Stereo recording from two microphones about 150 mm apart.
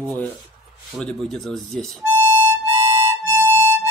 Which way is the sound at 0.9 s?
5° left (ahead or behind).